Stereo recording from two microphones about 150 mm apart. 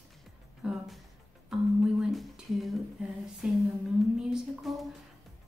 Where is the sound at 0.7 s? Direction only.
Centre (ahead or behind).